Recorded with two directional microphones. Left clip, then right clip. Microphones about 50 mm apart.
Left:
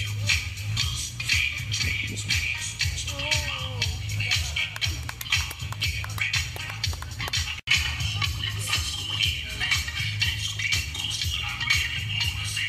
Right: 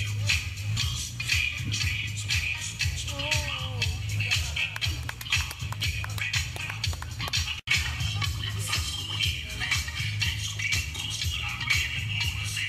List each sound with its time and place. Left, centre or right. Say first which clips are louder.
0.3 s music: left 2 dB; left